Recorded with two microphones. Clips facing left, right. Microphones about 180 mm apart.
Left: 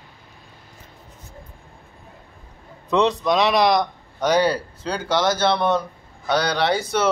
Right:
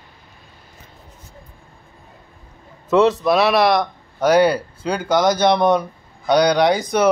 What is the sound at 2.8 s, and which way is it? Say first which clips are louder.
Speech: right 4 dB; 5° right (ahead or behind).